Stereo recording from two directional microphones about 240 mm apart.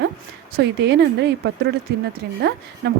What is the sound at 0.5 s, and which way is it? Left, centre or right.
Speech, right.